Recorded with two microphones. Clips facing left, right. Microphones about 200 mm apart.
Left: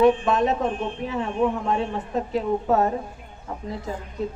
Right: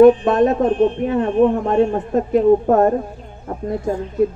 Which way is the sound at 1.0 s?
55° right (ahead or behind).